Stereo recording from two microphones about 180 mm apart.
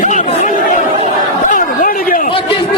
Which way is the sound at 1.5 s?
50° left (ahead or behind).